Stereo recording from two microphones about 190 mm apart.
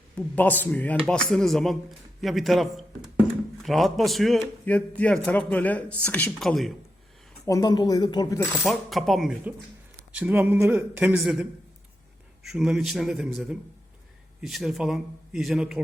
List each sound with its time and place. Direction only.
0.2 s a man's voice: 10° left (ahead or behind)
7.4 s speech: 20° left (ahead or behind)
8.6 s a man's voice: centre (ahead or behind)
12.5 s a man's voice: centre (ahead or behind)